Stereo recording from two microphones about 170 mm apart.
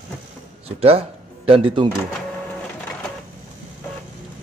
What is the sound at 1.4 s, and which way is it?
Speech, 30° right (ahead or behind).